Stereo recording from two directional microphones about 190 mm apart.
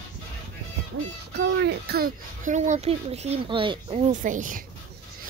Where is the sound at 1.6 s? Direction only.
55° right (ahead or behind); by 4.0 s 25° right (ahead or behind).